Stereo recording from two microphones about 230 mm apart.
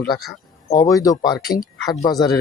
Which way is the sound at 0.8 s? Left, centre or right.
Centre.